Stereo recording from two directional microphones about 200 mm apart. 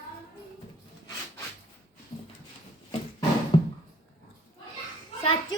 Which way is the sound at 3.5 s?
30° left (ahead or behind).